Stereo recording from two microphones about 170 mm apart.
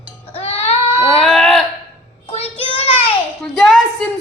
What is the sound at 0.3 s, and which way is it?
Baby cry, 35° left (ahead or behind).